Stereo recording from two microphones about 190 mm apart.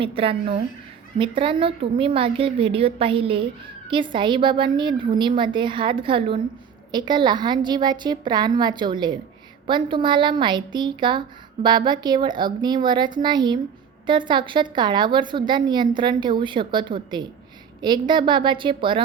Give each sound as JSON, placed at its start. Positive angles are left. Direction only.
{"t": 0.0, "sound": "a woman's voice", "side_deg": -30}